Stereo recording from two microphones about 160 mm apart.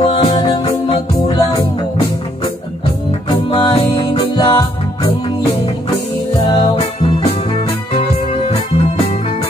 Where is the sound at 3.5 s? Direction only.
30° left (ahead or behind).